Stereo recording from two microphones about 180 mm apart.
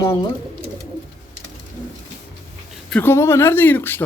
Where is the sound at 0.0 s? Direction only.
20° left (ahead or behind).